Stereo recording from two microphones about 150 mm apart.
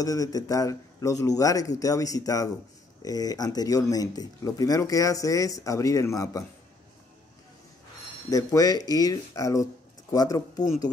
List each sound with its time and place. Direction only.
0.0 s speech: 25° left (ahead or behind)
8.3 s speech: 25° left (ahead or behind)